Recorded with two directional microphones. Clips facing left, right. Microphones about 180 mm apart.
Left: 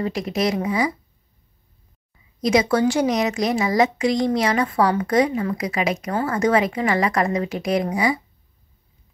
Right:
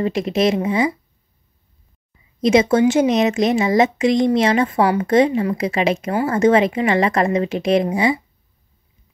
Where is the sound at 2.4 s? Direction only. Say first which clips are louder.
Right 4 dB; 25° right (ahead or behind).